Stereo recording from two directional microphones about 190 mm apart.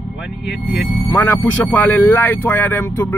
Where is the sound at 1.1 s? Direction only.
10° left (ahead or behind).